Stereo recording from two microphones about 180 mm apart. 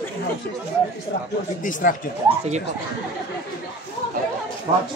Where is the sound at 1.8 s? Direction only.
45° left (ahead or behind).